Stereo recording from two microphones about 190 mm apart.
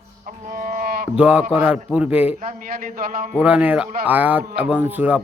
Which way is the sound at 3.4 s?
5° right (ahead or behind).